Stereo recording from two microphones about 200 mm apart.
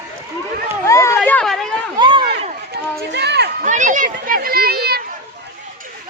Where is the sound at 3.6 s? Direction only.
40° right (ahead or behind).